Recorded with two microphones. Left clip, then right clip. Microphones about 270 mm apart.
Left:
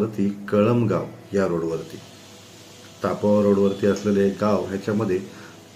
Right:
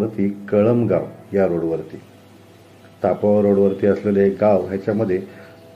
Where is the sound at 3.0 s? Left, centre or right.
Centre.